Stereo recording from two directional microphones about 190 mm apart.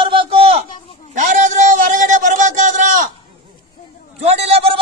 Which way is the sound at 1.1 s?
40° right (ahead or behind).